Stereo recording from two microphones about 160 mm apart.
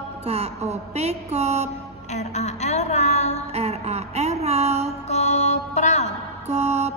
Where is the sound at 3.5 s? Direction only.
40° right (ahead or behind).